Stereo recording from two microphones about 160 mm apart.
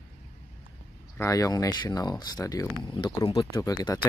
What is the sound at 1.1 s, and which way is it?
Speech, 20° left (ahead or behind).